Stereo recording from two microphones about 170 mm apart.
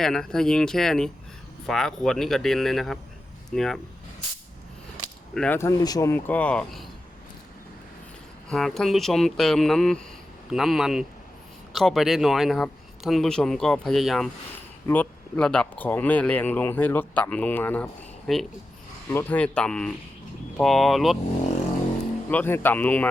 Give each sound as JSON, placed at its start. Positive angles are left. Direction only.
{"t": 0.0, "sound": "speech", "side_deg": 5}
{"t": 5.3, "sound": "speech", "side_deg": 5}
{"t": 5.5, "sound": "speech", "side_deg": 20}
{"t": 8.4, "sound": "speech", "side_deg": 0}
{"t": 22.3, "sound": "speech", "side_deg": 10}